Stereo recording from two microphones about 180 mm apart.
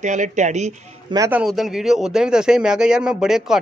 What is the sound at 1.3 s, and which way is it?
A man's voice, centre (ahead or behind).